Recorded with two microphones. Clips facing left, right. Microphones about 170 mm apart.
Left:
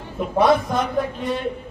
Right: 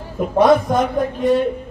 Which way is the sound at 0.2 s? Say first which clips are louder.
Right 4 dB; centre (ahead or behind).